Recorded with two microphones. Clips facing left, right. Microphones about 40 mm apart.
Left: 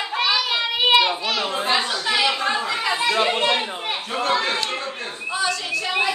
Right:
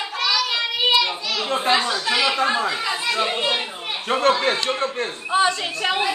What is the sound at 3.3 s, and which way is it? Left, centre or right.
Speech, left.